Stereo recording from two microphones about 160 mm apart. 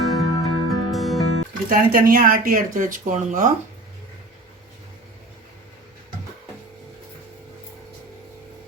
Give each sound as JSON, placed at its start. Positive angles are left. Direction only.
{"t": 0.0, "sound": "music", "side_deg": 0}
{"t": 1.7, "sound": "speech", "side_deg": -60}